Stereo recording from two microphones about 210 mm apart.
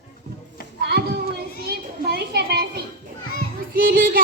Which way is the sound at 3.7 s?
45° right (ahead or behind).